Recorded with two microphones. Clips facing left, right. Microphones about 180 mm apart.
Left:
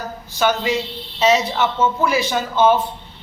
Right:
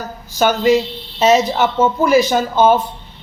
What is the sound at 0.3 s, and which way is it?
Speech, 45° right (ahead or behind).